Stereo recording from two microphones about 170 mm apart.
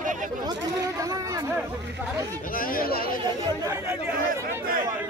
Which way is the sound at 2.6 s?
55° left (ahead or behind).